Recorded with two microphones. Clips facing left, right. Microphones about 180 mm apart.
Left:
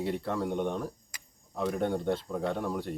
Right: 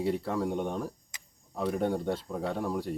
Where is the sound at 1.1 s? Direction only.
20° right (ahead or behind).